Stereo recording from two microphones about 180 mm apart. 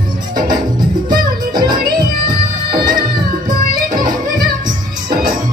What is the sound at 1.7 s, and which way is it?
Music, 50° right (ahead or behind).